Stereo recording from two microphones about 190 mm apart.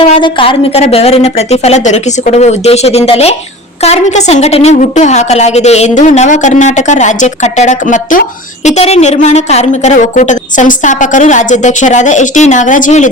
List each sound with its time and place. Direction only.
0.1 s a woman's voice: 25° left (ahead or behind)